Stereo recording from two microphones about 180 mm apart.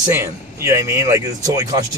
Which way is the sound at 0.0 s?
15° right (ahead or behind).